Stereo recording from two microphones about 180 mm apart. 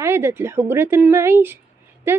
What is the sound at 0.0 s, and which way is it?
A woman's voice, 15° right (ahead or behind).